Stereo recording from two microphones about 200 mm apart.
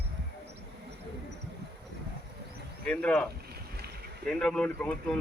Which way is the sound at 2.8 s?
5° left (ahead or behind).